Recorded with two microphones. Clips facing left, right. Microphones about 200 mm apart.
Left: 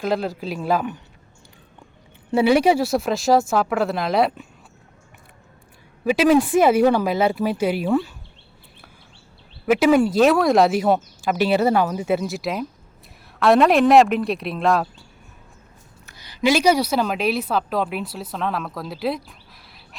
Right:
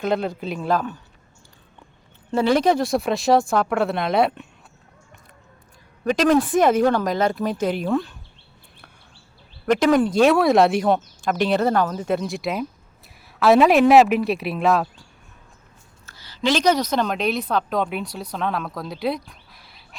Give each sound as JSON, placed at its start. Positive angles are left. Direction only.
{"t": 0.0, "sound": "speech", "side_deg": 0}
{"t": 2.3, "sound": "speech", "side_deg": 10}
{"t": 6.1, "sound": "speech", "side_deg": 10}
{"t": 9.6, "sound": "speech", "side_deg": 5}
{"t": 16.0, "sound": "a woman's voice", "side_deg": 15}